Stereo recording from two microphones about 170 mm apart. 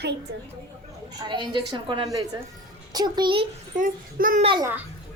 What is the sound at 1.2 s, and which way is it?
A woman's voice, 30° right (ahead or behind).